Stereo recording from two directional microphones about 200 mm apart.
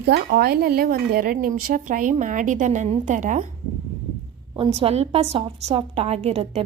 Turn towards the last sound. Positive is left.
turn(degrees=-30)  # may be behind; listen again after turning